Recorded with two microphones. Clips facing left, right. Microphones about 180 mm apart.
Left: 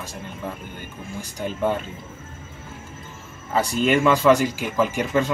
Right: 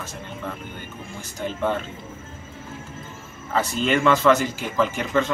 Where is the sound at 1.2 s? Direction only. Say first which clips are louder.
Left 1 dB; 15° left (ahead or behind).